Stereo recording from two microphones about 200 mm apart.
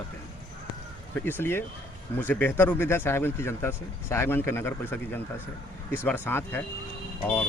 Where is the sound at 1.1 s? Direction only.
10° left (ahead or behind).